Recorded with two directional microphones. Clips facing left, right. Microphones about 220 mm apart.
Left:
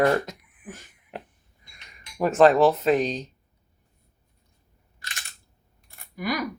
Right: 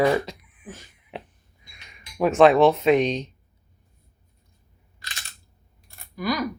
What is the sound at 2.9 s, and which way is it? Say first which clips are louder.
Speech: right 3 dB; 35° left (ahead or behind).